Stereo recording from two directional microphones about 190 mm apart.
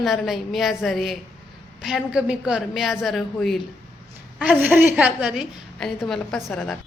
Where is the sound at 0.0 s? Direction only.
Centre (ahead or behind).